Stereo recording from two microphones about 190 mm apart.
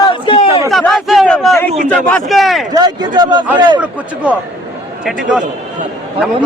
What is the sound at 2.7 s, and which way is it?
Speech, 20° right (ahead or behind).